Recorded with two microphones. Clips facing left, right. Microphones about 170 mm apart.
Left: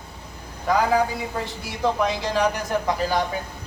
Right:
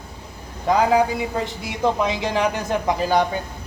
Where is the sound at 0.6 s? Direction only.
20° right (ahead or behind).